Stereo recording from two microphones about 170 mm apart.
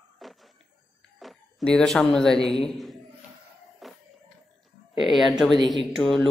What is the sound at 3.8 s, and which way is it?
Music, centre (ahead or behind).